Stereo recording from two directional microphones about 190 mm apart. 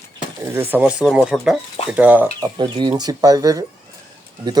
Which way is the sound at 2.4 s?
25° right (ahead or behind).